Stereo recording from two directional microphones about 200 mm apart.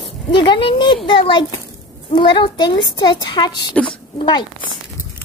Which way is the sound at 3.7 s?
5° left (ahead or behind).